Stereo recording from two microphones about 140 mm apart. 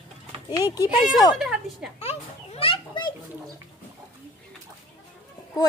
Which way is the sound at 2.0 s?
45° left (ahead or behind).